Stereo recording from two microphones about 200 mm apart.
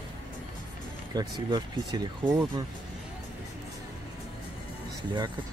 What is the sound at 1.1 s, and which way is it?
Speech, 20° right (ahead or behind).